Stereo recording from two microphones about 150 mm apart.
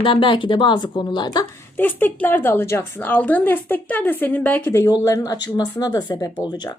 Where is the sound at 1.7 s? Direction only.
10° left (ahead or behind).